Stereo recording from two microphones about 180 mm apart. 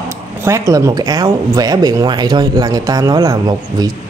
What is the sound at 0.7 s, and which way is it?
Speech, 20° right (ahead or behind).